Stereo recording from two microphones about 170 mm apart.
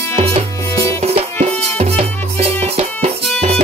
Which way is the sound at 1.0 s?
35° right (ahead or behind).